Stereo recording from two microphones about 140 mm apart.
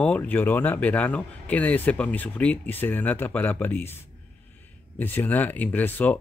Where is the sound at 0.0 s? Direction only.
10° left (ahead or behind).